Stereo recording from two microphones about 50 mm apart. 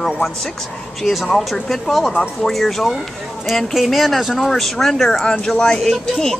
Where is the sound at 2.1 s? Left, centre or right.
Centre.